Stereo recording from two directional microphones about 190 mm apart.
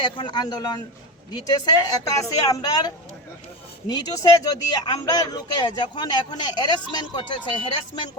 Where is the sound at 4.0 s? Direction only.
20° left (ahead or behind).